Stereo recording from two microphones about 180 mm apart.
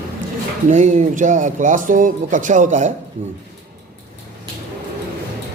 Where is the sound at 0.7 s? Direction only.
40° right (ahead or behind).